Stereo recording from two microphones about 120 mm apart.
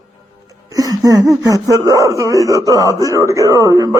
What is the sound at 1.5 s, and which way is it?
Speech, 25° right (ahead or behind).